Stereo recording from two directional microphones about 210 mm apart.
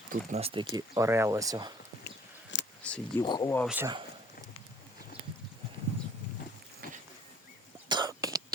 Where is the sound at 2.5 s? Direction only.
60° left (ahead or behind).